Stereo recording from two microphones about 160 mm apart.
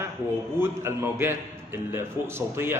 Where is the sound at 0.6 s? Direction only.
15° right (ahead or behind).